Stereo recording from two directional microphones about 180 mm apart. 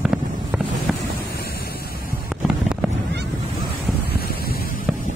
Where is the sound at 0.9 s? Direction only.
Centre (ahead or behind).